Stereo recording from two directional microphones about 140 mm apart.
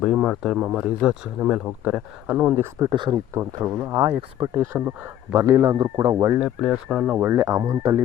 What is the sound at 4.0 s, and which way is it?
Speech, 35° right (ahead or behind).